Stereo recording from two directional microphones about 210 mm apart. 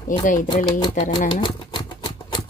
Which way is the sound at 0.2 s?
40° left (ahead or behind).